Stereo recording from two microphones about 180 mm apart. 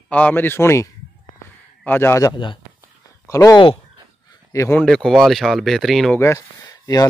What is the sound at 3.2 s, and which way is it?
Speech, 15° left (ahead or behind).